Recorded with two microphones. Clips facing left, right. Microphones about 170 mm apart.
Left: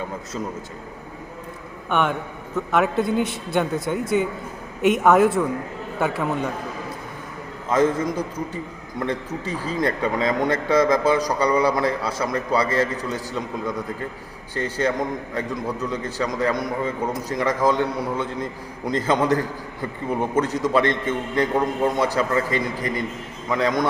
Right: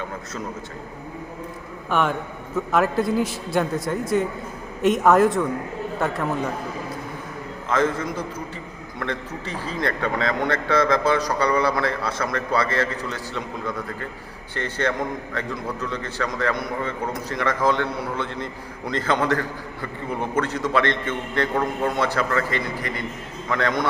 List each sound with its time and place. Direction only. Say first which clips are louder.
1.9 s a man's voice: even; centre (ahead or behind)
7.7 s a man's voice: left 3 dB; 15° left (ahead or behind)